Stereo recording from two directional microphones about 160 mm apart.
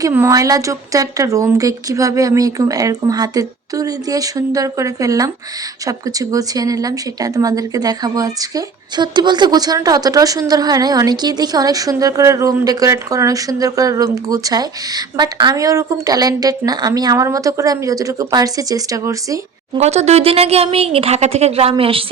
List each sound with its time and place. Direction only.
0.0 s speech: 15° right (ahead or behind)
19.8 s speech: 45° right (ahead or behind)